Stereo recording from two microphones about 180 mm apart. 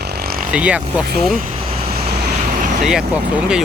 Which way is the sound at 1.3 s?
50° right (ahead or behind).